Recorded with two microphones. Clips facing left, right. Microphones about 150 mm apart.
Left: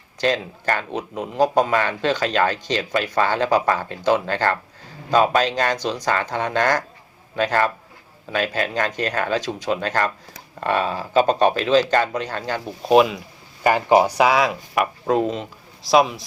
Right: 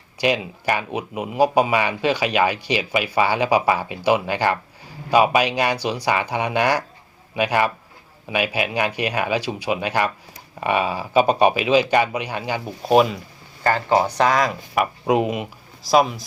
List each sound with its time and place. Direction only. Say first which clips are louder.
0.2 s speech: even; 10° right (ahead or behind)
13.7 s speech: left 3 dB; 15° left (ahead or behind)
14.3 s speech: left 1 dB; centre (ahead or behind)
15.0 s speech: right 1 dB; 15° right (ahead or behind)
15.8 s speech: even; centre (ahead or behind)